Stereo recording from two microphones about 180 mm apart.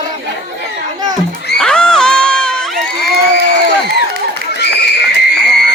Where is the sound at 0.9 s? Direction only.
20° right (ahead or behind).